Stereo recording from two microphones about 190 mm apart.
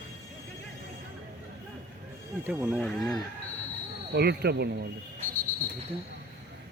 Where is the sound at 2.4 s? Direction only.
10° right (ahead or behind).